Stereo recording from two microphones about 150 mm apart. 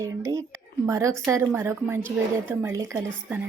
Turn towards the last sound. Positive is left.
turn(degrees=-15)  # may be behind; listen again after turning